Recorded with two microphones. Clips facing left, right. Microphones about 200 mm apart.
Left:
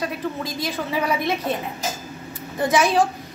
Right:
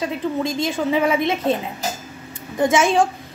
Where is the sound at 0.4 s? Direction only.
25° right (ahead or behind).